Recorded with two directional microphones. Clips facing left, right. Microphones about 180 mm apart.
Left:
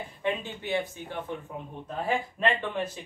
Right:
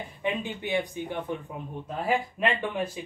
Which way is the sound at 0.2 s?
15° right (ahead or behind).